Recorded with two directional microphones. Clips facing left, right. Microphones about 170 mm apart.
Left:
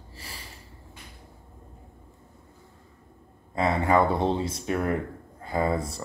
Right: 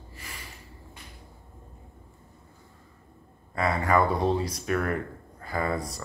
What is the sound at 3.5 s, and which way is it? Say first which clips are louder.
Speech: left 2 dB; 25° left (ahead or behind).